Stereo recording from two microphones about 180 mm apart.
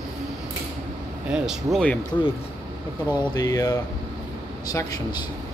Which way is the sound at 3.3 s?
20° left (ahead or behind).